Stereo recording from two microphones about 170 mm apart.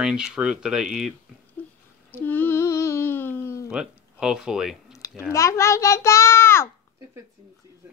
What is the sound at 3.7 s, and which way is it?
Speech, 5° right (ahead or behind).